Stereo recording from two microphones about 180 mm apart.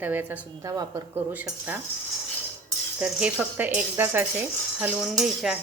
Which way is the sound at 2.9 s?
5° right (ahead or behind).